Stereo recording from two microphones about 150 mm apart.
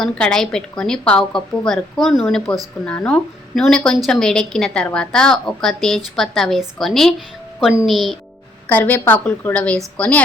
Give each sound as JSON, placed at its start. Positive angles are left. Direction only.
{"t": 0.0, "sound": "a woman's voice", "side_deg": 5}
{"t": 8.6, "sound": "a woman's voice", "side_deg": 10}